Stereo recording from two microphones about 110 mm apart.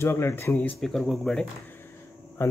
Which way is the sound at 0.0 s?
25° left (ahead or behind).